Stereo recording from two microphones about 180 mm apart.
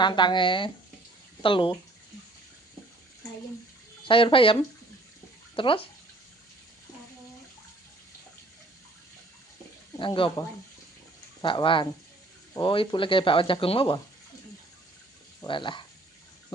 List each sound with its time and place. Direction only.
0.0 s speech: 25° left (ahead or behind)
4.0 s speech: 30° left (ahead or behind)
5.5 s speech: 30° left (ahead or behind)
10.0 s speech: 30° left (ahead or behind)
11.4 s speech: 30° left (ahead or behind)
15.4 s speech: 25° left (ahead or behind)